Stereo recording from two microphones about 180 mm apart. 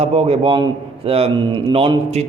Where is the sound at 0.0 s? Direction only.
35° right (ahead or behind).